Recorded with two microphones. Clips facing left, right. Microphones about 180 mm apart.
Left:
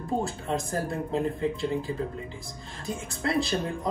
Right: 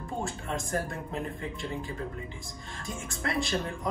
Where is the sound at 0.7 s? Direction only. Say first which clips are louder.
Left 3 dB; 35° left (ahead or behind).